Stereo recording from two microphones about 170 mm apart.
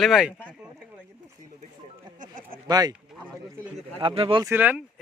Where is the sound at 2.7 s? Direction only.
25° right (ahead or behind).